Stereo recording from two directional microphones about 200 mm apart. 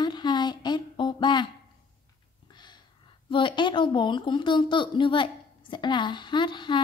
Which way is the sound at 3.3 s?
25° left (ahead or behind).